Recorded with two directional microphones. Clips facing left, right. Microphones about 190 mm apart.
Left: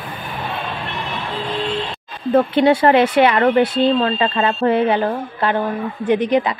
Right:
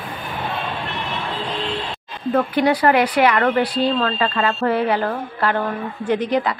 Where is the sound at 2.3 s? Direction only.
25° left (ahead or behind).